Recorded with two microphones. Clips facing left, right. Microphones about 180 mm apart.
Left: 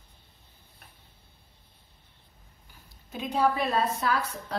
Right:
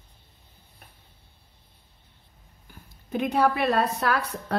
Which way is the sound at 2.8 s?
60° right (ahead or behind).